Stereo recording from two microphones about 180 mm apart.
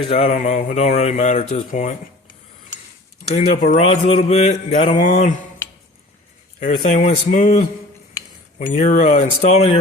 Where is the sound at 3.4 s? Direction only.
40° left (ahead or behind).